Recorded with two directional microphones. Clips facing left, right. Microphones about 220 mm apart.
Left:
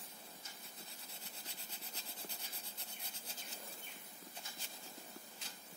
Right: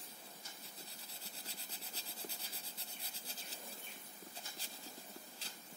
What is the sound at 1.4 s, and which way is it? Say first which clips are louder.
Rub: right 1 dB; 35° right (ahead or behind).